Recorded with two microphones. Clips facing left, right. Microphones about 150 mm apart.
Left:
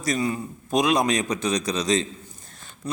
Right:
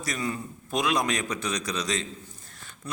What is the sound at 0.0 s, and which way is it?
Speech, 20° left (ahead or behind).